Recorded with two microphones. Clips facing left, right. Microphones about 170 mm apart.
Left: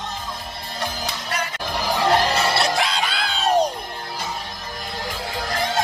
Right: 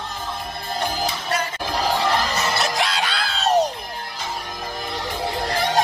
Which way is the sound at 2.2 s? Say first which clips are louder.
Left 3 dB; 30° left (ahead or behind).